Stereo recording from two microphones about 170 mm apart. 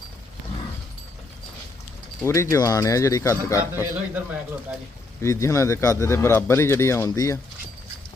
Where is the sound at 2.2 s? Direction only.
15° left (ahead or behind).